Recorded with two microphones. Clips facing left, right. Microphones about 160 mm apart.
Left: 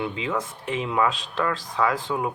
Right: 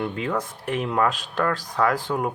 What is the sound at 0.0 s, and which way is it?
Speech, 55° right (ahead or behind).